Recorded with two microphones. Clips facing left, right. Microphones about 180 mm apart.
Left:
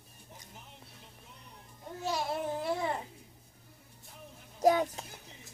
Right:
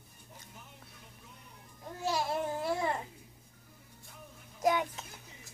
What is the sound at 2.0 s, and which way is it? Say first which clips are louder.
Babbling: right 1 dB; centre (ahead or behind).